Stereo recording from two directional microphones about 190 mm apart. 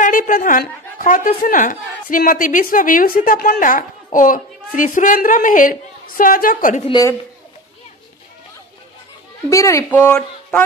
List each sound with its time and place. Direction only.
0.0 s a woman's voice: 45° left (ahead or behind)
6.9 s a woman's voice: 20° left (ahead or behind)
9.5 s speech: 15° left (ahead or behind)